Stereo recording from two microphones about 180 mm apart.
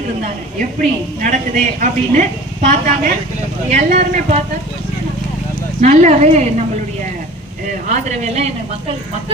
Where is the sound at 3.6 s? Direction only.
40° right (ahead or behind).